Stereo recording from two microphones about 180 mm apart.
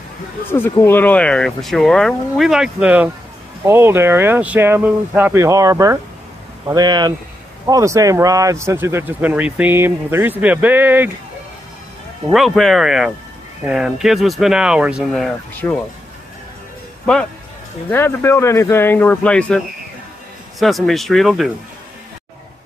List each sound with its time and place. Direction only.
0.5 s speech: 10° left (ahead or behind); by 11.1 s 10° right (ahead or behind)
12.3 s speech: centre (ahead or behind)
17.0 s a man's voice: 5° left (ahead or behind)